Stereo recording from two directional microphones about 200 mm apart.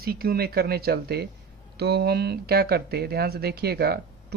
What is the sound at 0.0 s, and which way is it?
Speech, 50° right (ahead or behind).